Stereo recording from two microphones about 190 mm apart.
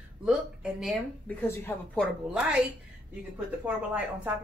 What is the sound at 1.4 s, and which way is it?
Speech, 10° left (ahead or behind).